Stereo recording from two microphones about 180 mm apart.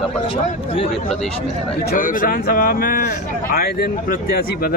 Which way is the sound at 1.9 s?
50° left (ahead or behind).